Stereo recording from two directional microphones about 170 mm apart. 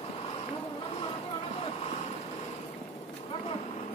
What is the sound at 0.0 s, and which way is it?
Vehicle, 35° left (ahead or behind).